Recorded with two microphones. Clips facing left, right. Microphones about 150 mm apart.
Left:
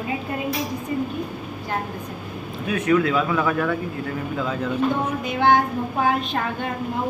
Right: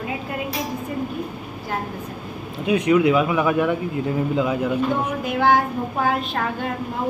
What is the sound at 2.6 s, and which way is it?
Speech, 20° right (ahead or behind).